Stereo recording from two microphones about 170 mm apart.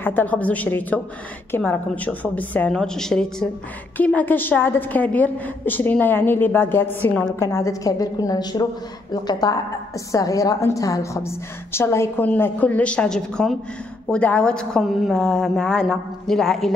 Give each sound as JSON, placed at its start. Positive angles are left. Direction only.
{"t": 0.0, "sound": "a woman's voice", "side_deg": 10}